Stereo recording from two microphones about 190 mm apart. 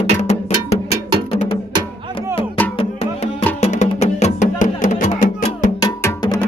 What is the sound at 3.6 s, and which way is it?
Music, 35° left (ahead or behind).